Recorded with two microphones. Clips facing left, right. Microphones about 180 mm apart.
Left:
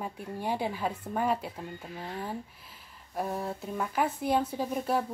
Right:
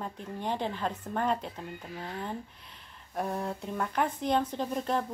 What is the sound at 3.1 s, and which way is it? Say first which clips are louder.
Speech: even; 5° left (ahead or behind).